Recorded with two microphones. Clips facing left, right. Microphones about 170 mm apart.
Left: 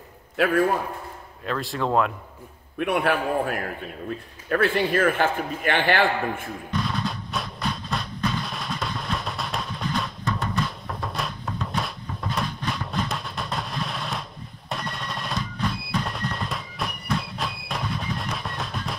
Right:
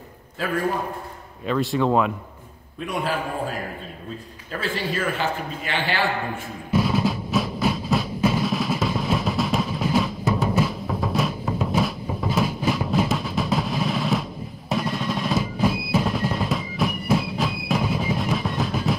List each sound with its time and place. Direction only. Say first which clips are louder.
0.4 s a man's voice: left 5 dB; 70° left (ahead or behind)
1.4 s speech: right 5 dB; centre (ahead or behind)
2.8 s a man's voice: left 3 dB; 65° left (ahead or behind)
6.7 s music: right 7 dB; 5° right (ahead or behind)